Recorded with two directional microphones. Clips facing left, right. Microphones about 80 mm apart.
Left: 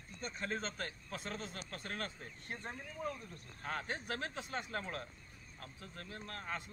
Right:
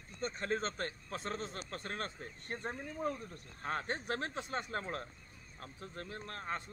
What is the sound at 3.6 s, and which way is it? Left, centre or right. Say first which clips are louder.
A man's voice: right 3 dB; right.